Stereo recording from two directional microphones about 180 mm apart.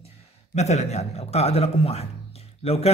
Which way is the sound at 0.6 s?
40° left (ahead or behind).